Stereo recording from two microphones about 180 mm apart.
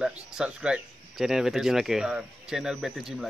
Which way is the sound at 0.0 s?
5° right (ahead or behind).